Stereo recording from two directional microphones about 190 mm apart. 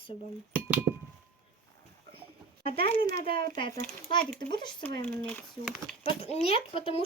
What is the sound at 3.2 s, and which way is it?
Speech, 55° right (ahead or behind).